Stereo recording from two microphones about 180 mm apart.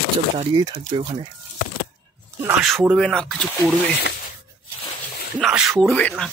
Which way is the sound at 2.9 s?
5° left (ahead or behind).